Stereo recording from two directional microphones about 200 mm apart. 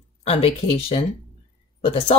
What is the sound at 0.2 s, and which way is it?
Speech, 30° left (ahead or behind).